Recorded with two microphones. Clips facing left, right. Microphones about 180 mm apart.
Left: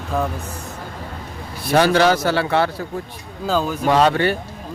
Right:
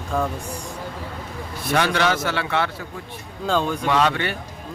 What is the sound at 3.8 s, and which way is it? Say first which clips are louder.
Speech: left 5 dB; 35° left (ahead or behind).